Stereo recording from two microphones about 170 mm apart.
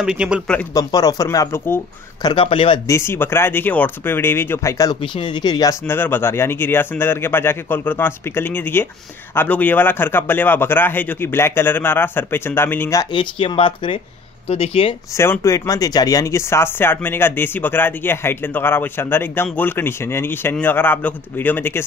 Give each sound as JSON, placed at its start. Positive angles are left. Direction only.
{"t": 0.0, "sound": "a man's voice", "side_deg": -5}
{"t": 0.7, "sound": "speech", "side_deg": 20}
{"t": 2.2, "sound": "speech", "side_deg": 30}
{"t": 2.9, "sound": "speech", "side_deg": 15}
{"t": 13.1, "sound": "speech", "side_deg": 30}
{"t": 15.1, "sound": "speech", "side_deg": 15}